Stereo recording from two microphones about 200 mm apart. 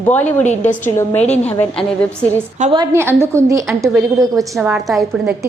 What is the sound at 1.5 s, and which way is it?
Speech, 10° left (ahead or behind).